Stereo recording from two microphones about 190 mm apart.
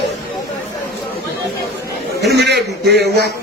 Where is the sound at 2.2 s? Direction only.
60° right (ahead or behind).